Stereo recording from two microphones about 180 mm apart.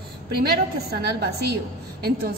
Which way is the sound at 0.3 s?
60° right (ahead or behind).